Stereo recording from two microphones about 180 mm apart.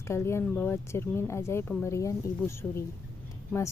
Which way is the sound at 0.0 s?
15° left (ahead or behind).